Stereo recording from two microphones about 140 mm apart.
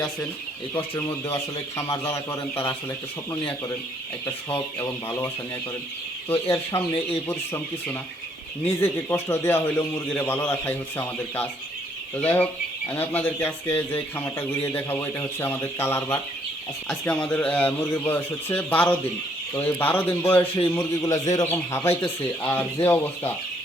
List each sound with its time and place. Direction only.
1.3 s speech: 25° left (ahead or behind)
4.8 s speech: 20° left (ahead or behind)
6.5 s speech: 20° left (ahead or behind)
16.9 s speech: 10° left (ahead or behind)